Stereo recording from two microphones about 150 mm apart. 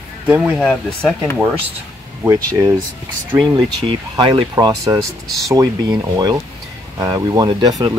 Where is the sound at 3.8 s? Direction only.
35° right (ahead or behind).